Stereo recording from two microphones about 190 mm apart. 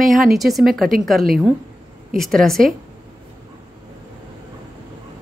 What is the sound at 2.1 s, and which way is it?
Speech, centre (ahead or behind).